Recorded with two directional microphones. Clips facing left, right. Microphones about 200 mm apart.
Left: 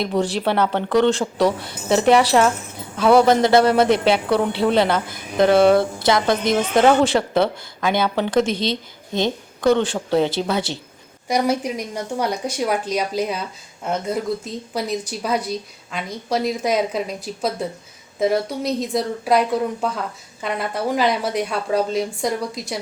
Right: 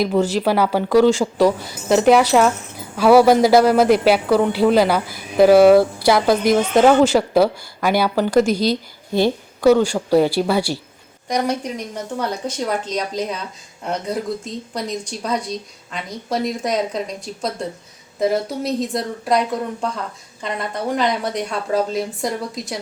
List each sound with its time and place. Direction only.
0.0 s speech: centre (ahead or behind)
11.3 s speech: 10° left (ahead or behind)